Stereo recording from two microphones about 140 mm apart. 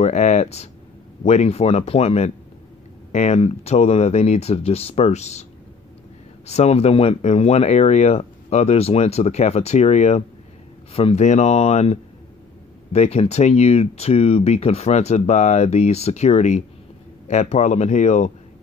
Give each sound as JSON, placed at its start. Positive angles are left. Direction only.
{"t": 0.0, "sound": "speech", "side_deg": 60}